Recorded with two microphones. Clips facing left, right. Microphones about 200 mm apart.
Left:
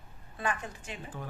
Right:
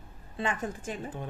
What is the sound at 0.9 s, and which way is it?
Speech, 45° right (ahead or behind).